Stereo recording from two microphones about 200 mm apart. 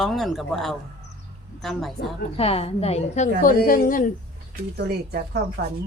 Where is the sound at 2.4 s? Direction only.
30° left (ahead or behind).